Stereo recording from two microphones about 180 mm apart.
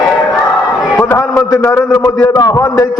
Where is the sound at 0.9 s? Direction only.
15° left (ahead or behind).